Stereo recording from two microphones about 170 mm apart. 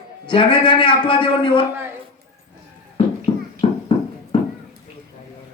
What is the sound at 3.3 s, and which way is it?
Music, 35° left (ahead or behind).